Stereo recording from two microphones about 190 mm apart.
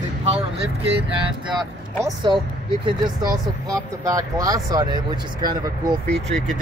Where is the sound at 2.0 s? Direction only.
25° right (ahead or behind).